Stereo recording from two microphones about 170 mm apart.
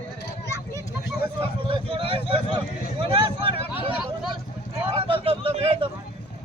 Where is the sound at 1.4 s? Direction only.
30° right (ahead or behind).